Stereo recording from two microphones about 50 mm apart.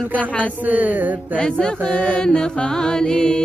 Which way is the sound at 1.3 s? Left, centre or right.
Centre.